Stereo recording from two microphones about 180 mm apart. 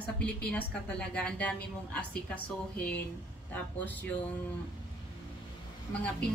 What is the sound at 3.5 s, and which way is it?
Speech, 10° left (ahead or behind).